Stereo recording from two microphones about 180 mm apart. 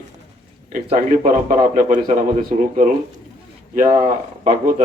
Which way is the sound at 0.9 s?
50° right (ahead or behind).